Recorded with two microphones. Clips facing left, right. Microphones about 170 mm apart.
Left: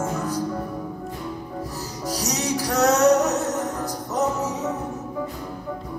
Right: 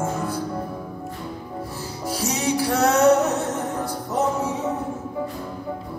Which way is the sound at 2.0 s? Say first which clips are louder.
Right 2 dB; 40° left (ahead or behind).